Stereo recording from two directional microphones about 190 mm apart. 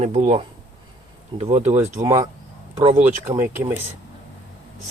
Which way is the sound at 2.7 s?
30° right (ahead or behind).